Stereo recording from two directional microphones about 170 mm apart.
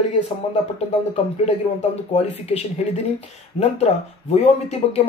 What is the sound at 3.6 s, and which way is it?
Speech, 40° left (ahead or behind).